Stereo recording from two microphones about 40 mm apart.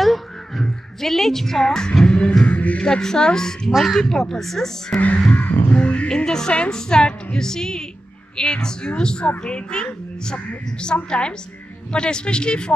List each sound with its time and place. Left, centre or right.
0.0 s crow: centre
2.0 s beatboxing: left
2.4 s music: left
2.8 s speech: centre
5.3 s music: left
5.7 s crow: left
6.0 s speech: centre